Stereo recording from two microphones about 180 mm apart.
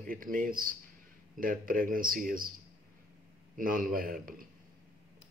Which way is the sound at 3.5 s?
50° right (ahead or behind).